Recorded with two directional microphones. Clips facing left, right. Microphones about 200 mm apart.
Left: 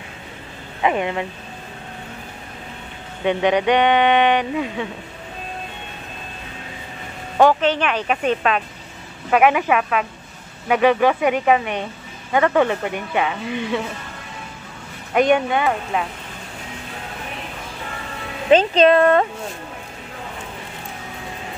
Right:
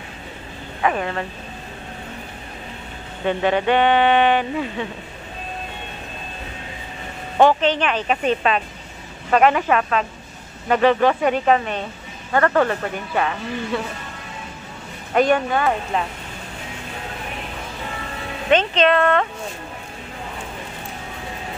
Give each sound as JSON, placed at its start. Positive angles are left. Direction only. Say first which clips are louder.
{"t": 0.8, "sound": "speech", "louder": "left 2 dB", "side_deg": 15}
{"t": 3.3, "sound": "speech", "louder": "left 2 dB", "side_deg": 15}
{"t": 7.4, "sound": "speech", "louder": "even", "side_deg": 10}
{"t": 15.1, "sound": "speech", "louder": "left 1 dB", "side_deg": 15}
{"t": 15.6, "sound": "speech", "louder": "even", "side_deg": 5}
{"t": 18.5, "sound": "speech", "louder": "left 4 dB", "side_deg": 35}